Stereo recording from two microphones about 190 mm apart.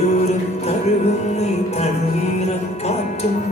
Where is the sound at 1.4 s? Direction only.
35° left (ahead or behind).